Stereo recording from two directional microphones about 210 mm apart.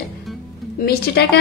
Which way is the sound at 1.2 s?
50° left (ahead or behind).